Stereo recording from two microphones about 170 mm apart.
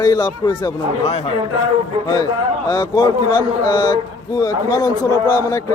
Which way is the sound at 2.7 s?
25° left (ahead or behind).